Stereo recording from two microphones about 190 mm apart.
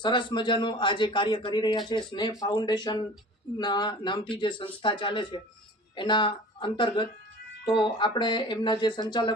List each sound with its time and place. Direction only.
0.0 s speech: 25° left (ahead or behind)